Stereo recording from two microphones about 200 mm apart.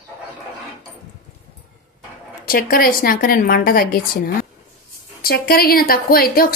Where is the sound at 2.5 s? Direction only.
45° left (ahead or behind).